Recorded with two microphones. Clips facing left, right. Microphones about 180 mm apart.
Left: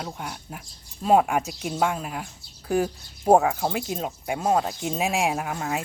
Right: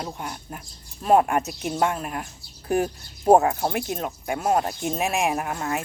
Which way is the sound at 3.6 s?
15° left (ahead or behind).